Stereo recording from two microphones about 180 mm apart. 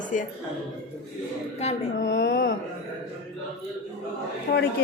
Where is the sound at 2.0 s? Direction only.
80° left.